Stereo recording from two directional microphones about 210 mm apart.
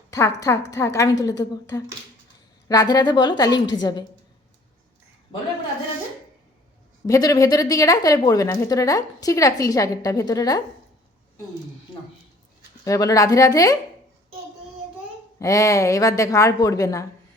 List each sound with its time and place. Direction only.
0.1 s a woman's voice: 15° left (ahead or behind)
7.1 s a woman's voice: 15° left (ahead or behind)
12.8 s a woman's voice: 15° left (ahead or behind)
15.4 s a woman's voice: 15° left (ahead or behind)